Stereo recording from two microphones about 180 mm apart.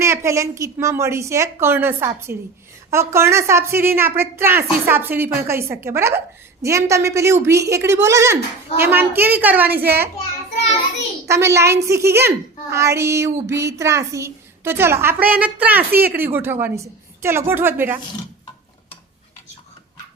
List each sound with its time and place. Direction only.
0.0 s a woman's voice: 15° right (ahead or behind)
11.3 s a woman's voice: 15° right (ahead or behind)